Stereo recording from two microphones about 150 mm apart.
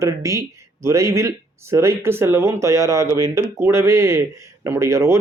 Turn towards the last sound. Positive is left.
turn(degrees=-20)  # may be behind; listen again after turning